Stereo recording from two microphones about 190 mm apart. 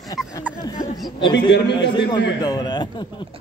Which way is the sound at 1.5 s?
65° left (ahead or behind).